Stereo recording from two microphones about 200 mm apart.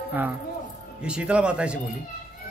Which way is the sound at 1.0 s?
5° right (ahead or behind).